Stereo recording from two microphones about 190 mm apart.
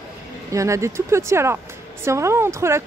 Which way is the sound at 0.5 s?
15° right (ahead or behind).